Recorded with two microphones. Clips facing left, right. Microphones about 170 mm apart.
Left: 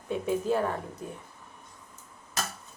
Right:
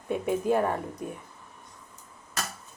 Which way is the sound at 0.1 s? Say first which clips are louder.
Right 2 dB; 10° right (ahead or behind).